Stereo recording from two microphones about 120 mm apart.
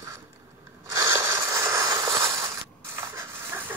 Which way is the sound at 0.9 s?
20° right (ahead or behind).